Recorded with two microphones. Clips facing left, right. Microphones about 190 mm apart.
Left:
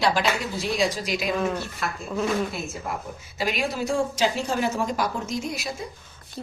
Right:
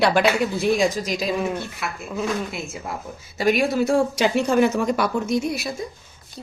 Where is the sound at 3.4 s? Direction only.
60° right (ahead or behind).